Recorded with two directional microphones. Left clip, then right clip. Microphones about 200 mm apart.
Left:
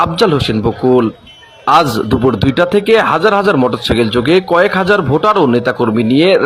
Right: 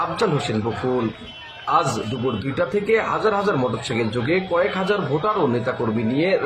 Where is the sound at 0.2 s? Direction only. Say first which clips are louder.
Left 10 dB; 40° left (ahead or behind).